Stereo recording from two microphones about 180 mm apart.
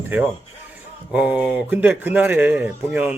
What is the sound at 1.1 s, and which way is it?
Speech, 10° right (ahead or behind).